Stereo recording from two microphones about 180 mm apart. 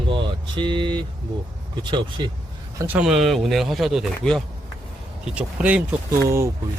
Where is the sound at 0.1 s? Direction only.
25° right (ahead or behind).